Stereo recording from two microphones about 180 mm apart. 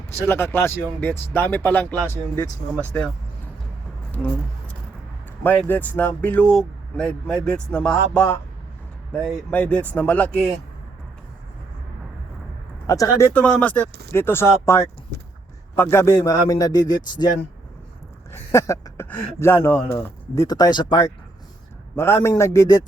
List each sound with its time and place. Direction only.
0.3 s speech: 15° left (ahead or behind)
4.2 s speech: 10° left (ahead or behind)
5.4 s speech: 10° left (ahead or behind)
12.9 s speech: 15° left (ahead or behind)
15.1 s a sound: 65° right (ahead or behind)
15.7 s speech: 15° left (ahead or behind)
18.3 s speech: 15° left (ahead or behind)
21.9 s speech: 15° left (ahead or behind)